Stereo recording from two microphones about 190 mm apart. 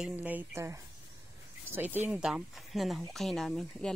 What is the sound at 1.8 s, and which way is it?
Speech, 10° right (ahead or behind).